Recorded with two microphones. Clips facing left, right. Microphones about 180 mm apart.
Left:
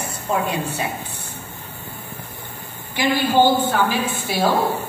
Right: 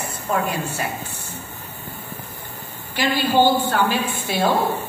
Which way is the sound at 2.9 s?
15° left (ahead or behind).